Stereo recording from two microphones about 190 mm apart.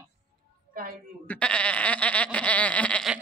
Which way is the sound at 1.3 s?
5° left (ahead or behind).